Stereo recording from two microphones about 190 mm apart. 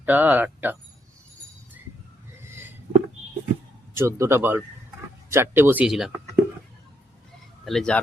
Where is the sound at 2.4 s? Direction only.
15° right (ahead or behind).